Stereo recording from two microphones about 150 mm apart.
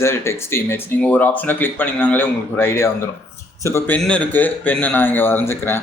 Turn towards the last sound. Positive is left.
turn(degrees=15)  # may be behind; listen again after turning